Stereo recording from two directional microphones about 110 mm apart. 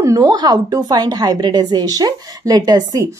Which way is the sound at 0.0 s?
30° right (ahead or behind).